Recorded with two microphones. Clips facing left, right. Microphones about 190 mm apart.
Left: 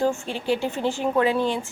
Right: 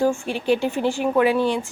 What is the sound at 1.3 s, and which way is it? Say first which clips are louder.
Speech: right 3 dB; 15° left (ahead or behind).